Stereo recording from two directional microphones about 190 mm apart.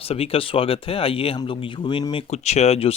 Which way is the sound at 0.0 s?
30° left (ahead or behind).